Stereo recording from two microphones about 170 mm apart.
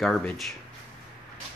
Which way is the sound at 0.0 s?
Centre (ahead or behind).